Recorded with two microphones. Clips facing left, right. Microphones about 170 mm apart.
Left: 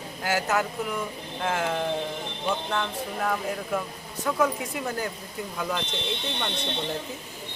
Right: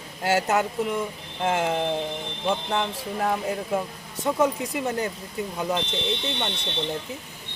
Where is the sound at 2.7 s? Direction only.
30° right (ahead or behind).